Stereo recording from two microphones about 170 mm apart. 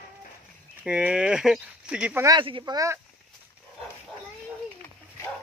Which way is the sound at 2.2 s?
25° right (ahead or behind).